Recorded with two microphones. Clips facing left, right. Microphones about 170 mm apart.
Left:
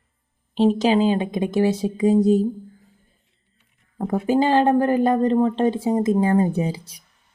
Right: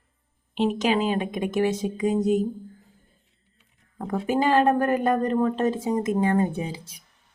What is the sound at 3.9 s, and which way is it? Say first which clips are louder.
Speech: left 5 dB; 30° left (ahead or behind).